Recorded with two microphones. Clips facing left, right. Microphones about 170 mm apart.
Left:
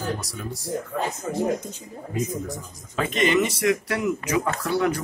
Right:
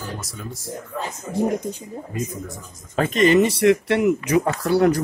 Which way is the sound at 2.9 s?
40° right (ahead or behind).